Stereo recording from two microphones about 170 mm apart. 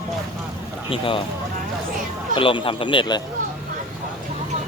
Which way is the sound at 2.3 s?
30° left (ahead or behind).